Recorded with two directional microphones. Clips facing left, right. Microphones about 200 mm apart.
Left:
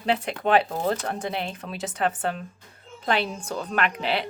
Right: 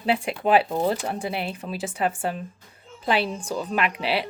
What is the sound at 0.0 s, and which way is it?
Speech, 5° right (ahead or behind).